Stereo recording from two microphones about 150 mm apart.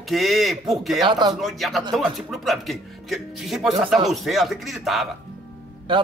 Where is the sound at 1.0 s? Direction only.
30° right (ahead or behind).